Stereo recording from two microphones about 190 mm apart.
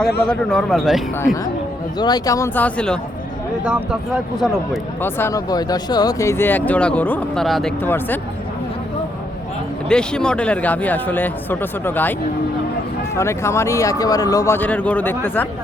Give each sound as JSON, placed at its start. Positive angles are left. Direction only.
{"t": 0.3, "sound": "speech", "side_deg": 5}
{"t": 2.0, "sound": "speech", "side_deg": 20}
{"t": 3.6, "sound": "speech", "side_deg": -5}
{"t": 5.0, "sound": "speech", "side_deg": 10}
{"t": 9.9, "sound": "speech", "side_deg": 5}
{"t": 13.1, "sound": "speech", "side_deg": 15}